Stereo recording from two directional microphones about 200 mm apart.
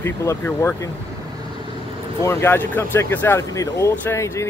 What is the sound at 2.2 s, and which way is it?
Speech, 10° left (ahead or behind).